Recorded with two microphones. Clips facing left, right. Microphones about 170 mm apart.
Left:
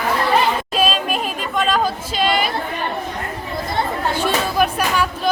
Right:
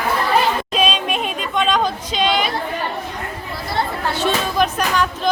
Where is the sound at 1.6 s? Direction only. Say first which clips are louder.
Even; 5° left (ahead or behind).